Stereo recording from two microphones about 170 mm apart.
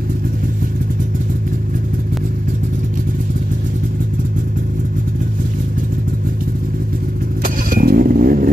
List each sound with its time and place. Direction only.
7.4 s vehicle: 55° right (ahead or behind)